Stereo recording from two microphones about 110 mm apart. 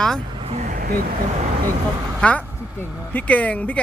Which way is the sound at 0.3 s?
70° right (ahead or behind).